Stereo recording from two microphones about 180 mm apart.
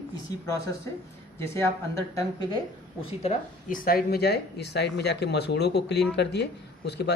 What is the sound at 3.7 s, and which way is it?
Speech, 55° left (ahead or behind).